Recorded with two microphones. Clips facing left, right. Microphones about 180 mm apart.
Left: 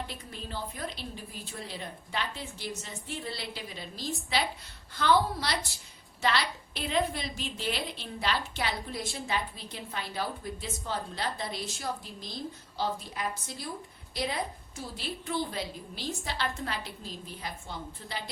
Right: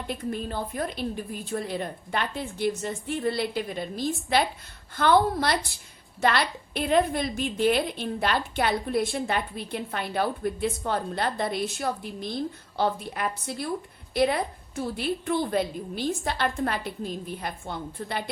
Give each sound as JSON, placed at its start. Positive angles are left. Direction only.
{"t": 0.1, "sound": "a woman's voice", "side_deg": -55}